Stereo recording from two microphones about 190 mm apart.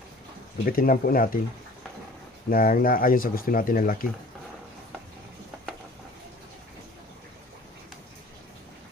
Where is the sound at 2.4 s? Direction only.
50° left (ahead or behind).